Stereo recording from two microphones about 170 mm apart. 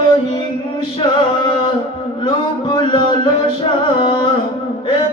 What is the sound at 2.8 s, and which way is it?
Music, 30° left (ahead or behind).